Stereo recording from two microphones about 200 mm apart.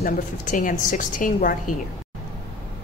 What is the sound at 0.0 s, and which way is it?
A woman's voice, 40° left (ahead or behind).